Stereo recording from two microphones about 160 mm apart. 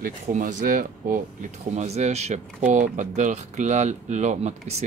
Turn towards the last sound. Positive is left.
turn(degrees=-45)  # may be behind; listen again after turning